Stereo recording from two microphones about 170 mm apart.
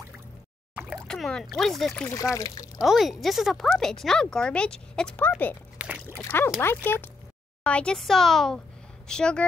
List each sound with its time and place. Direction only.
1.0 s speech: 5° left (ahead or behind)
2.0 s speech: 20° left (ahead or behind)
2.8 s speech: centre (ahead or behind)
5.8 s a sound: 5° right (ahead or behind)
6.1 s speech: 15° left (ahead or behind)